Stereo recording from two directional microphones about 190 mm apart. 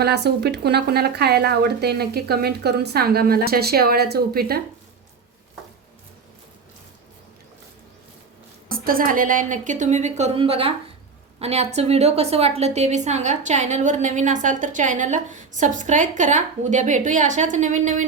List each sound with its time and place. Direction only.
0.0 s speech: 60° right (ahead or behind)
8.7 s a woman's voice: 50° right (ahead or behind)